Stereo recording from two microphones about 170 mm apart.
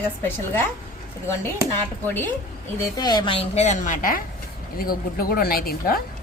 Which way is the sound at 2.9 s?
25° left (ahead or behind).